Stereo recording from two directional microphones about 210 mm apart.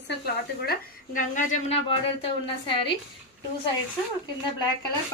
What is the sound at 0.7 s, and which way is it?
A woman's voice, 40° left (ahead or behind).